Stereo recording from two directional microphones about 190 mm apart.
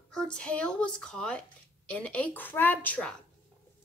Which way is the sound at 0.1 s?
5° left (ahead or behind).